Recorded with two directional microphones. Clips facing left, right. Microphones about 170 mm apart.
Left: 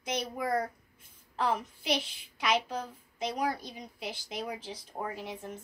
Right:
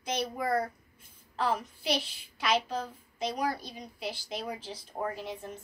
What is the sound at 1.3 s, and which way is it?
A child's voice, 20° left (ahead or behind).